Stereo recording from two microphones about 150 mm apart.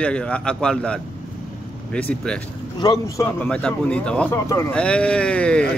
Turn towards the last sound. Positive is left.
turn(degrees=5)  # may be behind; listen again after turning